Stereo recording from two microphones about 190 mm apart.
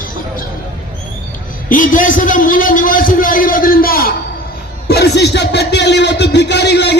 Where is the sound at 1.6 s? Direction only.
45° left (ahead or behind).